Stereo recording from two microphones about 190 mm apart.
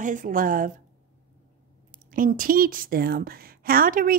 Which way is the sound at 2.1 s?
45° right (ahead or behind).